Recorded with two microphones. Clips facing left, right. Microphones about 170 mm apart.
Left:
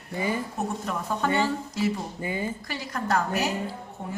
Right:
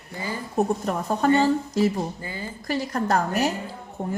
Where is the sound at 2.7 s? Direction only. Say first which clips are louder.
Right 7 dB; 40° right (ahead or behind).